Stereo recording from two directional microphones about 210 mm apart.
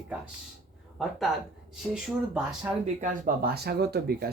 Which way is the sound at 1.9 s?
5° right (ahead or behind).